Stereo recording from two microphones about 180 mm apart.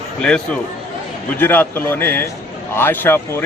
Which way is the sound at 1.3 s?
10° left (ahead or behind).